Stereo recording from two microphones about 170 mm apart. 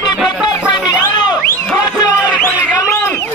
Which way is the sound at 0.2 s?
5° right (ahead or behind).